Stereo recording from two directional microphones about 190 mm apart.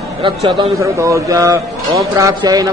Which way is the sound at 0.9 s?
15° right (ahead or behind).